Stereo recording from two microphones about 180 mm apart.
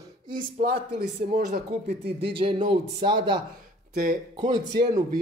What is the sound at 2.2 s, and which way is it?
Speech, 30° right (ahead or behind).